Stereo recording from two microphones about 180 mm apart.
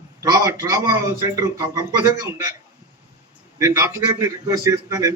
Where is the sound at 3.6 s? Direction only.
15° right (ahead or behind).